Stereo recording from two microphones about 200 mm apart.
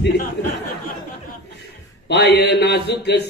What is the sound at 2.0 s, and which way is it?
Speech, 55° left (ahead or behind).